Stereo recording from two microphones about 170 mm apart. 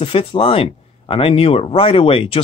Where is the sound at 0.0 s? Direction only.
35° left (ahead or behind).